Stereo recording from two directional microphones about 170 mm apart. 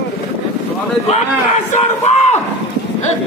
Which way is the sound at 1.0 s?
40° left (ahead or behind).